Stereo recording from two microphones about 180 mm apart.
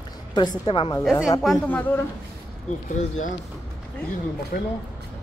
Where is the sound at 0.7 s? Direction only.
25° left (ahead or behind).